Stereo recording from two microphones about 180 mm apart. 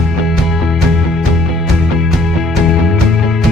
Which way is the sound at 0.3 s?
Centre (ahead or behind).